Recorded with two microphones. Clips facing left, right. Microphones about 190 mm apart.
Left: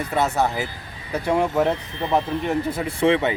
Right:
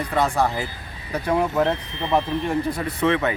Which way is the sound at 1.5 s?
10° left (ahead or behind).